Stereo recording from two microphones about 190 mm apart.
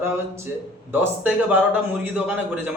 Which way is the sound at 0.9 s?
10° right (ahead or behind).